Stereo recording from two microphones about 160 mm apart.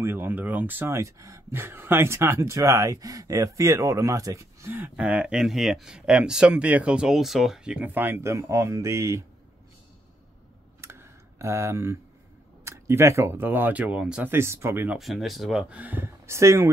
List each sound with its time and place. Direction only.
0.0 s speech: 15° right (ahead or behind)
10.8 s a sound: 15° right (ahead or behind)
12.6 s speech: 15° right (ahead or behind)
15.0 s speech: centre (ahead or behind); by 16.6 s 15° right (ahead or behind)